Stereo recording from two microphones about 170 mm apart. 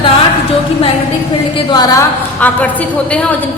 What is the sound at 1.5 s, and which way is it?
Speech, 25° left (ahead or behind).